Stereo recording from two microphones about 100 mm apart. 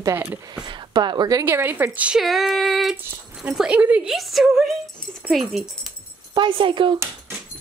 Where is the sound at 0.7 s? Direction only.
50° right (ahead or behind).